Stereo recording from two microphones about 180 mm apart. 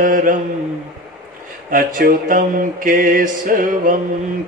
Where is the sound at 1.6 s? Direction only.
50° right (ahead or behind).